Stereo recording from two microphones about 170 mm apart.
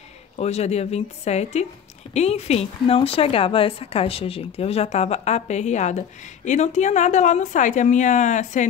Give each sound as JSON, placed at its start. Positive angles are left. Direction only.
{"t": 0.4, "sound": "a woman's voice", "side_deg": 40}